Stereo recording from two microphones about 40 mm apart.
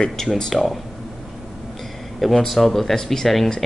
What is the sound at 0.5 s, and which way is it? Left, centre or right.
Speech, centre.